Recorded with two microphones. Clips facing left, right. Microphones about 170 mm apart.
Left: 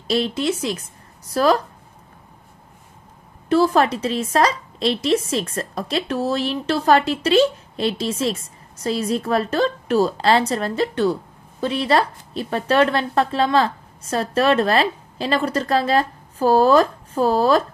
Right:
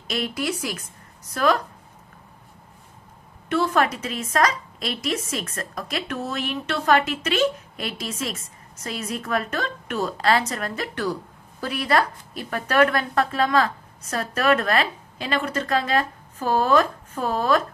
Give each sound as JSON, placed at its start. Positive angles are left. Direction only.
{"t": 0.1, "sound": "a woman's voice", "side_deg": 25}
{"t": 3.4, "sound": "a woman's voice", "side_deg": 35}